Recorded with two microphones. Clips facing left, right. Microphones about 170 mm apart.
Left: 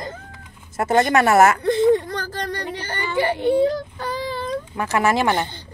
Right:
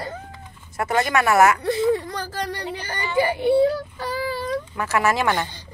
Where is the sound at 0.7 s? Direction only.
25° left (ahead or behind).